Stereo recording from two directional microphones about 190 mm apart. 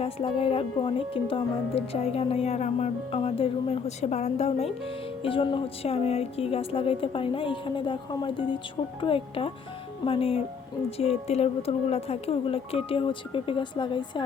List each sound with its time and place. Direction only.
0.0 s speech: 30° left (ahead or behind)